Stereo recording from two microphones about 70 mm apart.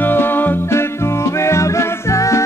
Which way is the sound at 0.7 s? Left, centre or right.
Left.